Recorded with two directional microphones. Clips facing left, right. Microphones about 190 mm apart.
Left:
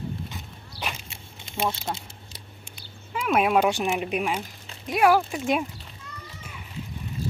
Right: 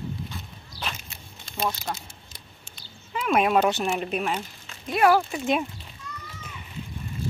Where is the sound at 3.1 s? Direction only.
5° left (ahead or behind).